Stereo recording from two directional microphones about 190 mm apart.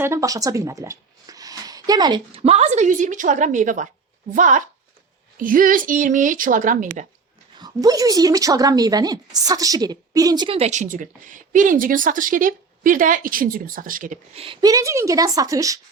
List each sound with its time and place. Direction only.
0.0 s a woman's voice: 15° right (ahead or behind); by 7.0 s 40° right (ahead or behind)
7.5 s a woman's voice: 20° right (ahead or behind); by 14.2 s 45° right (ahead or behind)
14.3 s speech: 25° right (ahead or behind)